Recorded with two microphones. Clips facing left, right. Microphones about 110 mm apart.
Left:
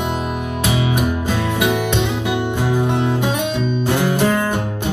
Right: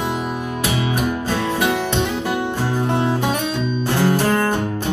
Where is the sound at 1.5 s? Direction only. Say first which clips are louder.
Left 2 dB; 15° left (ahead or behind).